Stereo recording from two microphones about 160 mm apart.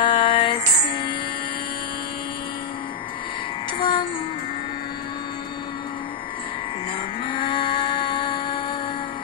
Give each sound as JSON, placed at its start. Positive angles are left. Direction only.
{"t": 0.0, "sound": "music", "side_deg": 30}
{"t": 3.7, "sound": "music", "side_deg": 30}
{"t": 7.2, "sound": "music", "side_deg": 30}